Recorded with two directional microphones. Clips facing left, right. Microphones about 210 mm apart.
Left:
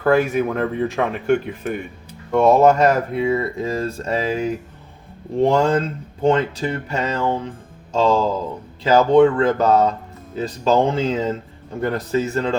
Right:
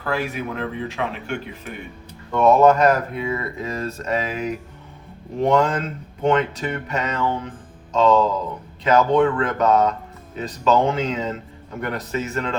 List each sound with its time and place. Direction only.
0.0 s speech: 50° left (ahead or behind)
2.3 s speech: 30° left (ahead or behind)